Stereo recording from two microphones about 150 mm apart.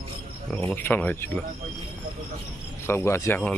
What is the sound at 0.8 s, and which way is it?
Speech, 15° left (ahead or behind).